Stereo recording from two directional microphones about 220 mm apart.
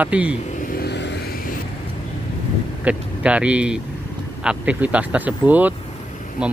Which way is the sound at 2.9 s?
5° right (ahead or behind).